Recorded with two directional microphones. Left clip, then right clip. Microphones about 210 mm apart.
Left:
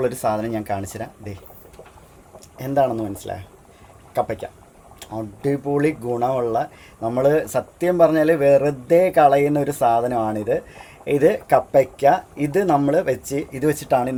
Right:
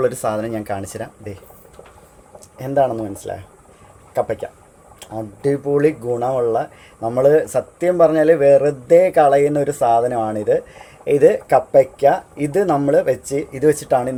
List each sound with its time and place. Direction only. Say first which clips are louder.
0.0 s speech: right 2 dB; centre (ahead or behind)
2.6 s speech: right 2 dB; 5° left (ahead or behind)